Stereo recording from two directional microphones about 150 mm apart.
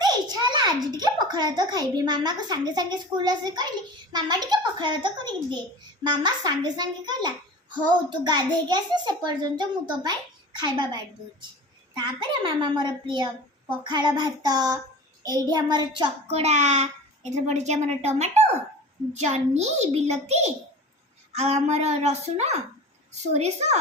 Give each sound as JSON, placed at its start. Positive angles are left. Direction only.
{"t": 0.0, "sound": "a child's voice", "side_deg": -30}
{"t": 15.2, "sound": "child singing", "side_deg": -25}
{"t": 15.5, "sound": "a woman's voice", "side_deg": -30}
{"t": 16.4, "sound": "a child's voice", "side_deg": -50}